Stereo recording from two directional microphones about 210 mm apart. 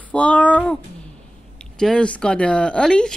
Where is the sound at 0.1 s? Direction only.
5° left (ahead or behind).